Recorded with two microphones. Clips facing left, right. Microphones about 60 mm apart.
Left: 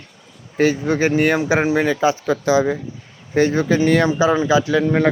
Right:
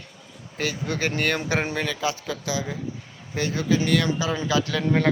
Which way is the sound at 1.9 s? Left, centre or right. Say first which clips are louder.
Left 10 dB; left.